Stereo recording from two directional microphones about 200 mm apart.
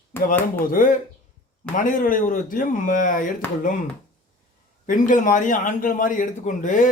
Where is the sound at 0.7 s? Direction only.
40° left (ahead or behind).